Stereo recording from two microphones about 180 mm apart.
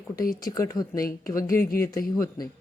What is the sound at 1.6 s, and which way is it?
Speech, 55° left (ahead or behind).